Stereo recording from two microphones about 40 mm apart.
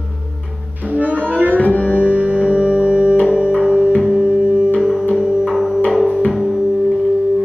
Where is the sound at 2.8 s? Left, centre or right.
Right.